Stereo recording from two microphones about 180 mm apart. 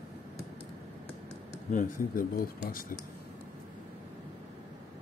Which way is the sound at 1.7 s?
45° left (ahead or behind).